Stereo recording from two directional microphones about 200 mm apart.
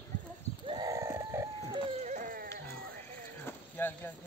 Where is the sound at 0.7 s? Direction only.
20° right (ahead or behind).